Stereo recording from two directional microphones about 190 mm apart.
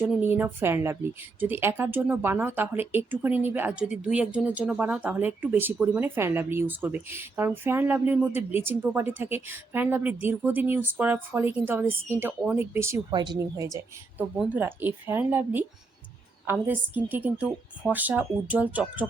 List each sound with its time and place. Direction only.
0.0 s speech: 10° right (ahead or behind)